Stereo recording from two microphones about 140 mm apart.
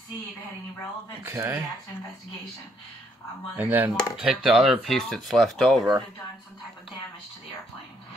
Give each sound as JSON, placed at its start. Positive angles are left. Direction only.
{"t": 1.2, "sound": "speech", "side_deg": -15}
{"t": 3.6, "sound": "speech", "side_deg": -15}
{"t": 4.2, "sound": "speech", "side_deg": -5}